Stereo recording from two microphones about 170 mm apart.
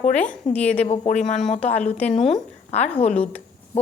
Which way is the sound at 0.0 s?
45° left (ahead or behind).